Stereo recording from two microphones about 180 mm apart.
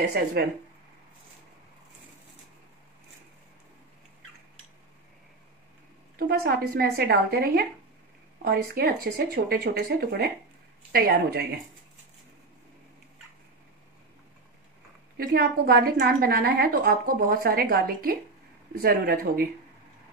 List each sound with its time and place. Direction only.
0.1 s a woman's voice: 60° right (ahead or behind)
6.1 s a woman's voice: 60° right (ahead or behind)
15.1 s a woman's voice: 60° right (ahead or behind)